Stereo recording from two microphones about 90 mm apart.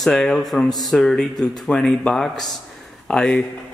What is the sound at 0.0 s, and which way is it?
A man's voice, 5° left (ahead or behind).